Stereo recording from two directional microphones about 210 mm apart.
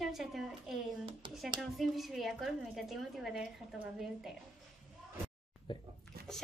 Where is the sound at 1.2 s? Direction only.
25° right (ahead or behind).